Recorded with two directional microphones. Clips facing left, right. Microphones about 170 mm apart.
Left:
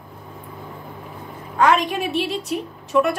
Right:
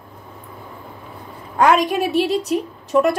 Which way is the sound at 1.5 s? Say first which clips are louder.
Right 3 dB; 40° right (ahead or behind).